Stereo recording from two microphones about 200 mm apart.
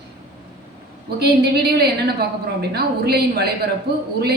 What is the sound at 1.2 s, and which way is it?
A woman's voice, 55° right (ahead or behind).